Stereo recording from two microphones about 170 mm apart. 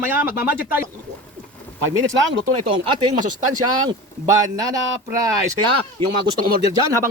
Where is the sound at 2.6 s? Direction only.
30° right (ahead or behind).